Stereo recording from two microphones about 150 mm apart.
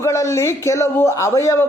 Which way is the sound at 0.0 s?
20° left (ahead or behind).